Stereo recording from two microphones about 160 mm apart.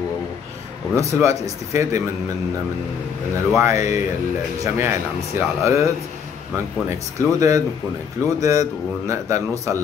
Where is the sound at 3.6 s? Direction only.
20° right (ahead or behind).